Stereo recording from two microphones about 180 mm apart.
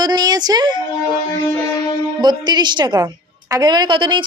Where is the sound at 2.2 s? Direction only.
25° right (ahead or behind).